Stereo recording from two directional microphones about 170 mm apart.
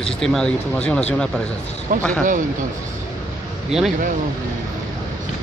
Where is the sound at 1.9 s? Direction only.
60° right (ahead or behind).